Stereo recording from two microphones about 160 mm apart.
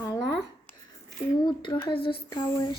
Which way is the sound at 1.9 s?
30° left (ahead or behind).